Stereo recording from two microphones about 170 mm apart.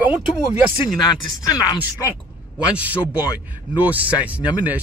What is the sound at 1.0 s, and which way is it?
Speech, 20° left (ahead or behind).